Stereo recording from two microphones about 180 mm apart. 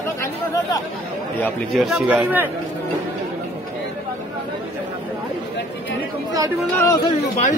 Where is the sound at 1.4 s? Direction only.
Centre (ahead or behind).